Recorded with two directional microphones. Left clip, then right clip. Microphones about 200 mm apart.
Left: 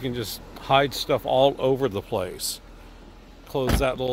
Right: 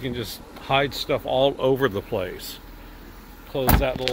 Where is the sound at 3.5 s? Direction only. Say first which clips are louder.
Right 1 dB; 45° left (ahead or behind).